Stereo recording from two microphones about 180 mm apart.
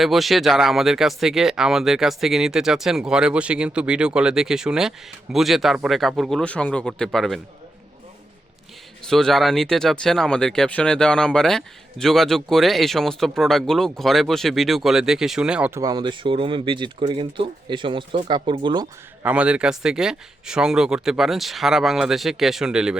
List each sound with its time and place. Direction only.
0.0 s speech: centre (ahead or behind)
9.0 s speech: centre (ahead or behind)
15.8 s speech: 20° right (ahead or behind)
19.2 s speech: 10° right (ahead or behind)